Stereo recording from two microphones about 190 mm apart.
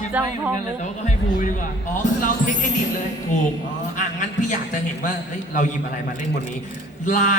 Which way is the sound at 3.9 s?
40° left (ahead or behind).